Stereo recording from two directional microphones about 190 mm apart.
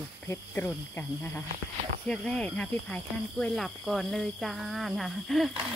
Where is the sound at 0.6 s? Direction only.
10° left (ahead or behind).